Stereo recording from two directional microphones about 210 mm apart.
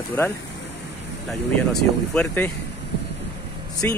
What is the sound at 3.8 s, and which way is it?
Speech, 10° left (ahead or behind).